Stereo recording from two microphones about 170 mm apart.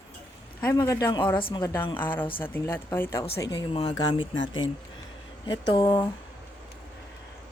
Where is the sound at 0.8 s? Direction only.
20° left (ahead or behind).